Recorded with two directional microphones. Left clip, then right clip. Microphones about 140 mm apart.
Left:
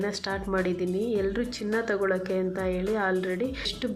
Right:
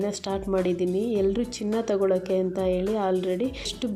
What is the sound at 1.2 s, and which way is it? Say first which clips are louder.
Speech: right 4 dB; 45° right (ahead or behind).